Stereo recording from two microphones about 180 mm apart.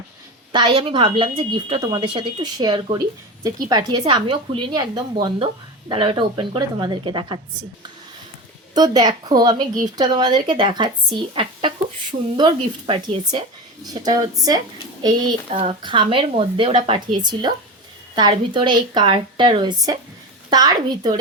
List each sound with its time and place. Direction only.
0.5 s a woman's voice: 25° right (ahead or behind)
8.7 s a woman's voice: 20° right (ahead or behind)
12.4 s a woman's voice: 30° right (ahead or behind)